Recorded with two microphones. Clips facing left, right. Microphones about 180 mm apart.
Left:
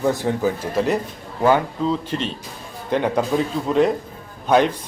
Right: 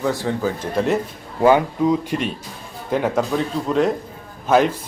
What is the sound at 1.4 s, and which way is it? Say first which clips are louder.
Speech: right 3 dB; 15° right (ahead or behind).